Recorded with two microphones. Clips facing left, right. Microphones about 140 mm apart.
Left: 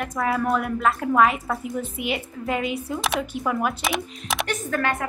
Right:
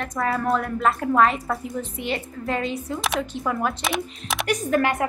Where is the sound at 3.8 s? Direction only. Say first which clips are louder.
Even; centre (ahead or behind).